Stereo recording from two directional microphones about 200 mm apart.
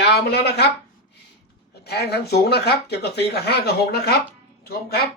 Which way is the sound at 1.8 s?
55° left (ahead or behind).